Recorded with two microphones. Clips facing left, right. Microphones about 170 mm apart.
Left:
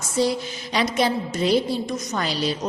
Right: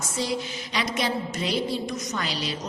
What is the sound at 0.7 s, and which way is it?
A woman's voice, 35° left (ahead or behind).